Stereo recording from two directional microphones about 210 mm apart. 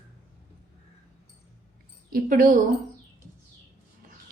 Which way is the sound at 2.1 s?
40° right (ahead or behind).